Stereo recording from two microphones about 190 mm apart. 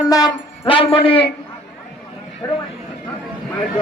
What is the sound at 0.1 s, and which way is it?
Speech, 25° left (ahead or behind).